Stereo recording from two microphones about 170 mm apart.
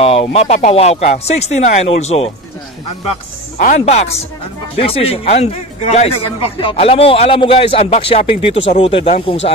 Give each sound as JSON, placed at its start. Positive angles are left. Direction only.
{"t": 0.0, "sound": "a man's voice", "side_deg": 35}
{"t": 3.5, "sound": "a man's voice", "side_deg": 45}